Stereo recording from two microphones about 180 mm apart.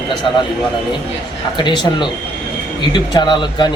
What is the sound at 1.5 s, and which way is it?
Speech, 25° left (ahead or behind).